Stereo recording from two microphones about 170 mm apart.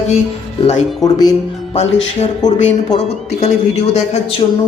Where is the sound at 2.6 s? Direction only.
45° left (ahead or behind).